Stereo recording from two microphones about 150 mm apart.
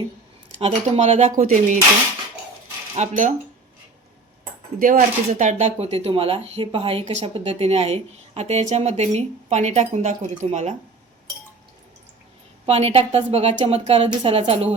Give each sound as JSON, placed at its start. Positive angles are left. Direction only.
{"t": 0.6, "sound": "speech", "side_deg": -40}
{"t": 2.9, "sound": "speech", "side_deg": -50}
{"t": 4.8, "sound": "speech", "side_deg": -65}
{"t": 5.3, "sound": "speech", "side_deg": -50}
{"t": 12.6, "sound": "a woman's voice", "side_deg": -40}